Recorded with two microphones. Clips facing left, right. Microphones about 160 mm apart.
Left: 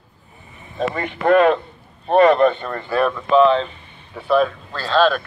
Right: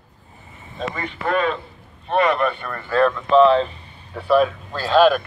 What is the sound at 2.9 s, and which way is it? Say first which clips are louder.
Speech: right 2 dB; 15° left (ahead or behind).